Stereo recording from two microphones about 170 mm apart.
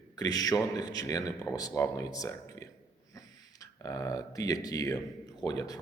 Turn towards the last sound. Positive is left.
turn(degrees=20)  # may be behind; listen again after turning